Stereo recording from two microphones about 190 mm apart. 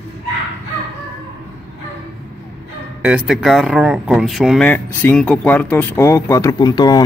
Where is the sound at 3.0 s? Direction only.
5° right (ahead or behind).